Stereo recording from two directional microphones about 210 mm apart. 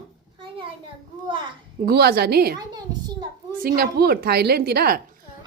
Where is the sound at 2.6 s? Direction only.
20° right (ahead or behind).